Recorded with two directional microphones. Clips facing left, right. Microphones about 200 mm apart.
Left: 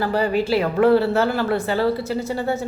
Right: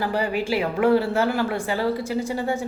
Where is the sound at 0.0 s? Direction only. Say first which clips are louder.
Left 4 dB; 15° right (ahead or behind).